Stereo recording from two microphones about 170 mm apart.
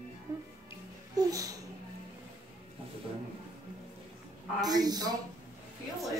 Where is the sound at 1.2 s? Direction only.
20° right (ahead or behind).